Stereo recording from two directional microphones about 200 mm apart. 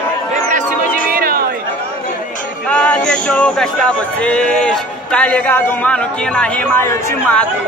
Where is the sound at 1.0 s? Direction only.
45° right (ahead or behind).